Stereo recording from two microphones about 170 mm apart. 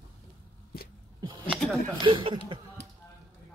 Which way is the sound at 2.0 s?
30° right (ahead or behind).